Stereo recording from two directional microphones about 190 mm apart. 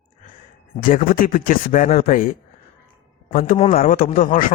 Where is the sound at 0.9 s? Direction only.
45° left (ahead or behind).